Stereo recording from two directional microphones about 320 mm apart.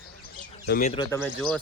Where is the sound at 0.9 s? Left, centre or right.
Centre.